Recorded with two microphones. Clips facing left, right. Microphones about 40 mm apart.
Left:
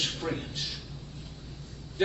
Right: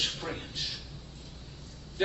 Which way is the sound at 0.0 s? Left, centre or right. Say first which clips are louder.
Left 2 dB; centre.